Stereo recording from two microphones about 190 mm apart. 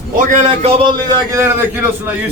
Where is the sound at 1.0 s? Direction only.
15° right (ahead or behind).